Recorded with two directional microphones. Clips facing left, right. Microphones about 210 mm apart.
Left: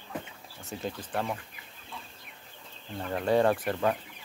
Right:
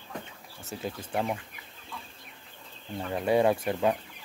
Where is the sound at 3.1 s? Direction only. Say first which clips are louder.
Right 1 dB; 10° right (ahead or behind).